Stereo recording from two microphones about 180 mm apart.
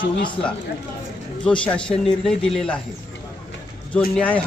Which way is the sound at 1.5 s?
5° left (ahead or behind).